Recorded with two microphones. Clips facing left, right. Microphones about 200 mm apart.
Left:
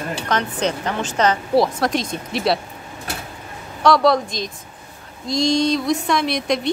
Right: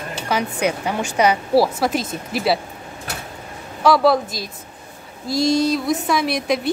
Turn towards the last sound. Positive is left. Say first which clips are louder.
# even
turn(degrees=-5)  # may be behind; listen again after turning